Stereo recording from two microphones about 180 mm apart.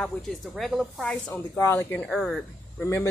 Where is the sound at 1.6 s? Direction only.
15° left (ahead or behind).